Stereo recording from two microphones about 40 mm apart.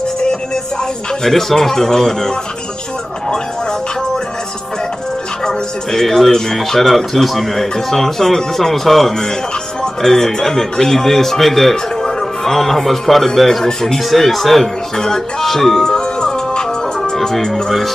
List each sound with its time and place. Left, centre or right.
1.2 s speech: centre
5.4 s a man's voice: centre
15.8 s music: centre
17.3 s speech: centre